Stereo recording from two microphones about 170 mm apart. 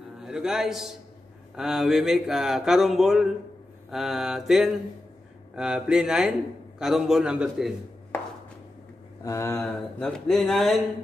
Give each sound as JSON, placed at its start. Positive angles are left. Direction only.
{"t": 0.2, "sound": "speech", "side_deg": -5}
{"t": 9.2, "sound": "speech", "side_deg": 15}
{"t": 9.6, "sound": "speech", "side_deg": 5}